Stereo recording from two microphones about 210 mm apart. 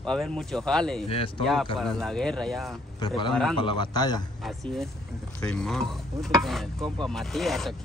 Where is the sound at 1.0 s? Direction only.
25° left (ahead or behind).